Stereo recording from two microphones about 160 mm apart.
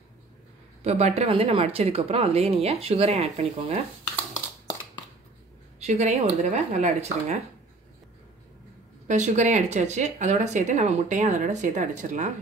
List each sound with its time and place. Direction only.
0.8 s speech: 40° right (ahead or behind)
5.8 s speech: 45° right (ahead or behind)
9.0 s speech: 45° right (ahead or behind)